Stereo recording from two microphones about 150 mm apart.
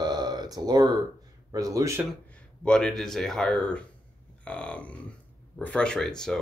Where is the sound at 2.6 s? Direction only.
5° left (ahead or behind).